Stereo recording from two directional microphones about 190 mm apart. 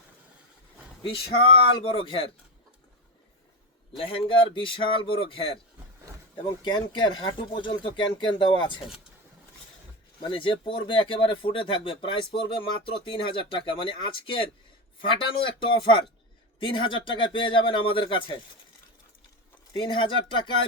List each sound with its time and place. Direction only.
1.8 s speech: 30° left (ahead or behind)
3.9 s speech: 30° left (ahead or behind)
6.6 s speech: 25° left (ahead or behind)
10.2 s speech: 25° left (ahead or behind)
19.7 s speech: 25° left (ahead or behind)